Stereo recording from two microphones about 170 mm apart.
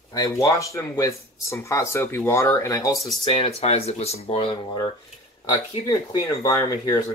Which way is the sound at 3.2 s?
30° left (ahead or behind).